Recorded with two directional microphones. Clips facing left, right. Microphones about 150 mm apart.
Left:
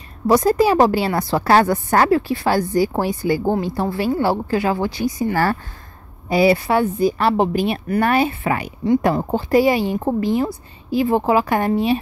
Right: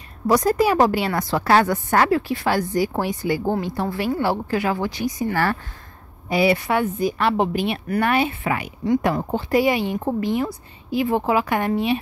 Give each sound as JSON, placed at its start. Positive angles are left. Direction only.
{"t": 0.3, "sound": "a woman's voice", "side_deg": 30}